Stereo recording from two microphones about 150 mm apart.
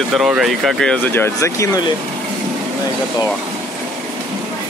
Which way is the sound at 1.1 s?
15° left (ahead or behind).